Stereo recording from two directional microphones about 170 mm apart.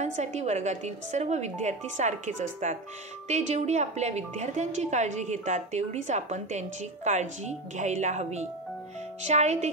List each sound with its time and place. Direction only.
0.0 s speech: 45° right (ahead or behind)